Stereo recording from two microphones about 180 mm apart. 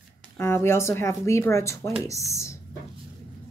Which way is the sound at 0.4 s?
15° left (ahead or behind).